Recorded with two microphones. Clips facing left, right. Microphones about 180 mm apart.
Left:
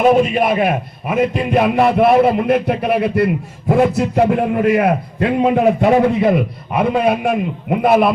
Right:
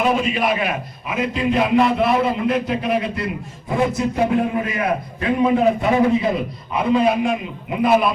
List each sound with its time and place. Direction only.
0.1 s a man's voice: 50° left (ahead or behind)